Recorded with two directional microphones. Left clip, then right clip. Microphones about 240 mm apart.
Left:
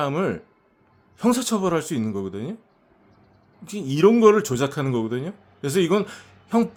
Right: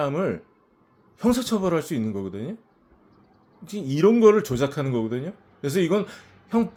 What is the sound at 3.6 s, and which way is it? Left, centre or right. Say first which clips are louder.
A man's voice: left 2 dB; centre.